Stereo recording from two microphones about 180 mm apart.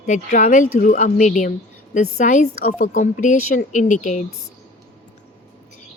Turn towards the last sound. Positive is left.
turn(degrees=45)  # may be behind; listen again after turning